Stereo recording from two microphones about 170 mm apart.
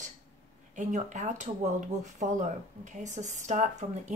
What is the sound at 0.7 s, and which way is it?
Speech, 45° right (ahead or behind).